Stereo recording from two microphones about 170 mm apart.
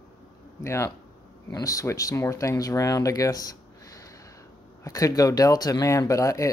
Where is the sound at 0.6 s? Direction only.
15° left (ahead or behind).